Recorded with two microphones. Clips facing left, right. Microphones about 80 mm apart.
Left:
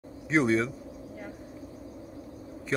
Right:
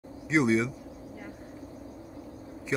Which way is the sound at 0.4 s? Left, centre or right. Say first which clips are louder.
Even; centre.